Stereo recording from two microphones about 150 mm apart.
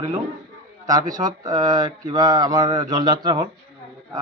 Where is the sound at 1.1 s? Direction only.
25° right (ahead or behind).